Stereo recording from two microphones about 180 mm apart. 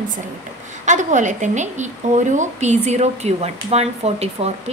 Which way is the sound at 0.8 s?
40° right (ahead or behind).